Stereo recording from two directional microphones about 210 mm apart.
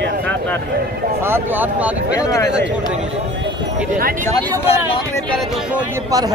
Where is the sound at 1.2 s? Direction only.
10° right (ahead or behind).